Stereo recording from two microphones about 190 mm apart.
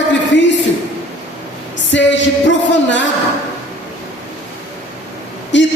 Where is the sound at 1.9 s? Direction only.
70° left (ahead or behind).